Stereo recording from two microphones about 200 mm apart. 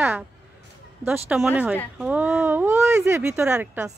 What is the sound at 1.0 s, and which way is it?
Speech, 10° right (ahead or behind).